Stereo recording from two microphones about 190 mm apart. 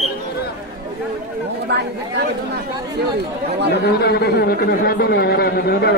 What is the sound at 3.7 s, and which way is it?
Speech, 65° left (ahead or behind).